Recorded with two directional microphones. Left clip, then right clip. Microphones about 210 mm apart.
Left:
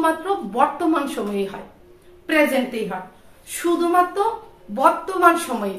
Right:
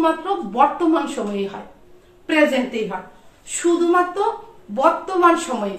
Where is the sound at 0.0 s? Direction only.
15° left (ahead or behind).